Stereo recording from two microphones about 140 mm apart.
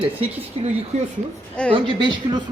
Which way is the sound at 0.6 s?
45° right (ahead or behind).